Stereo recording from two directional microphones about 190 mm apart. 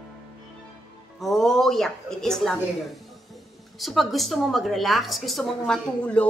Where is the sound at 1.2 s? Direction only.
Centre (ahead or behind).